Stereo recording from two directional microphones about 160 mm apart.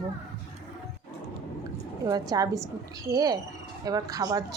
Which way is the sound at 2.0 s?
20° right (ahead or behind).